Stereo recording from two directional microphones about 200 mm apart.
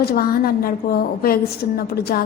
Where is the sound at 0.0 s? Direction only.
50° left (ahead or behind).